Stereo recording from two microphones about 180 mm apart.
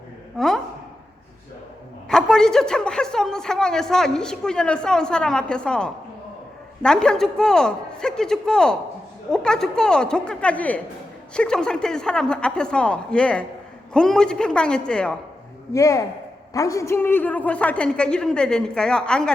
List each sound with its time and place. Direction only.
0.3 s a sound: centre (ahead or behind)
2.0 s a man's voice: 5° left (ahead or behind)
15.7 s a man's voice: 20° left (ahead or behind)